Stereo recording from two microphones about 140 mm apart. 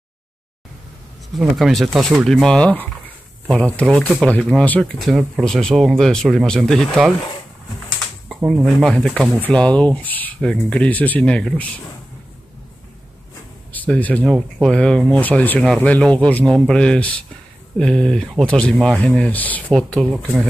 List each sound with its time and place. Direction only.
1.3 s speech: centre (ahead or behind)
8.5 s speech: 5° right (ahead or behind)
13.7 s speech: 10° left (ahead or behind)